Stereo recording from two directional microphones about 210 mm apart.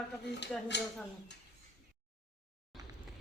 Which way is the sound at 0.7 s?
55° left (ahead or behind).